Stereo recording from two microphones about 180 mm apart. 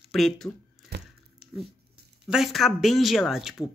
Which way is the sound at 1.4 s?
5° right (ahead or behind).